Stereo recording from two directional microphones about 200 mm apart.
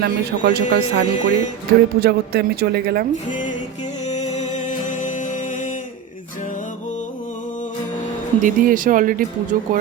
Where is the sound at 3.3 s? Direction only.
40° left (ahead or behind).